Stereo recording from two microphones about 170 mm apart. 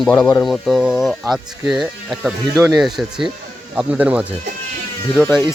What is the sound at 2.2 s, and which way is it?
Speech, 15° right (ahead or behind).